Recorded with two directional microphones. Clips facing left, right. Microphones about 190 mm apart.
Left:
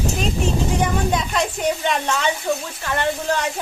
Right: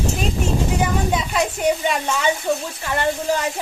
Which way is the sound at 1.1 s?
5° right (ahead or behind).